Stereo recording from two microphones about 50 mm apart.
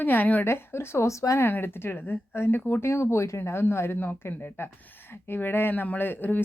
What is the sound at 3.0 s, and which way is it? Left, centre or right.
Speech, left.